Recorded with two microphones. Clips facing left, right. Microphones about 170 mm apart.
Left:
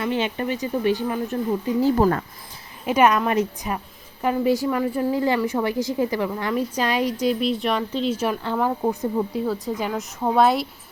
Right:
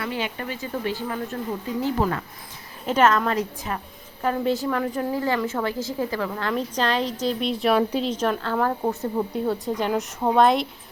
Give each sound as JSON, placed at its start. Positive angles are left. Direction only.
{"t": 0.0, "sound": "speech", "side_deg": 20}
{"t": 1.8, "sound": "speech", "side_deg": 40}
{"t": 2.8, "sound": "a woman's voice", "side_deg": 10}
{"t": 7.3, "sound": "a woman's voice", "side_deg": 0}
{"t": 8.1, "sound": "a woman's voice", "side_deg": 10}